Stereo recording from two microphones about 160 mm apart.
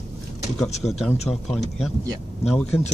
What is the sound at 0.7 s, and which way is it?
Speech, 45° left (ahead or behind).